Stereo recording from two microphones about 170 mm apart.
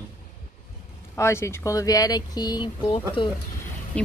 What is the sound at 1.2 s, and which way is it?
Speech, 15° left (ahead or behind).